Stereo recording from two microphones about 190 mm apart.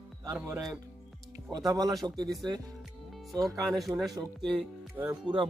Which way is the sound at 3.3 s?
15° right (ahead or behind).